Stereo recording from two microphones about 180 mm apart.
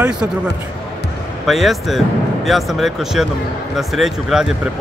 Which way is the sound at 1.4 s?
Centre (ahead or behind).